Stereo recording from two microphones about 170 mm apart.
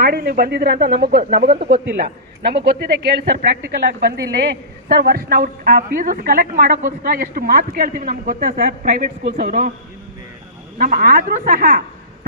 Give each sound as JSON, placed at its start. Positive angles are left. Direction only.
{"t": 0.0, "sound": "a woman's voice", "side_deg": -65}
{"t": 1.7, "sound": "a woman's voice", "side_deg": -75}
{"t": 10.8, "sound": "a woman's voice", "side_deg": -55}